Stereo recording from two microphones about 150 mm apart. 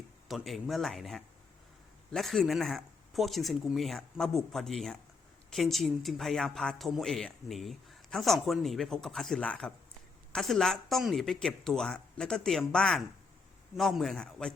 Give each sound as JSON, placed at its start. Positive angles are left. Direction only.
{"t": 0.3, "sound": "speech", "side_deg": 0}